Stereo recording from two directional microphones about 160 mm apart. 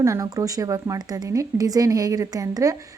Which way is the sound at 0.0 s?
20° right (ahead or behind).